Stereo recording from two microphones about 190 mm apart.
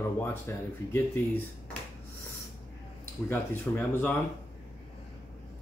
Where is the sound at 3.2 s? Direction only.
10° left (ahead or behind).